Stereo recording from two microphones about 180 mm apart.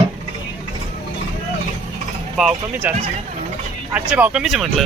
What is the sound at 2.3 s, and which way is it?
Speech, 5° right (ahead or behind).